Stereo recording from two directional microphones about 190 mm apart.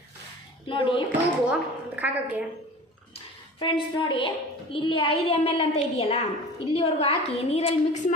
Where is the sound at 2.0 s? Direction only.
10° right (ahead or behind).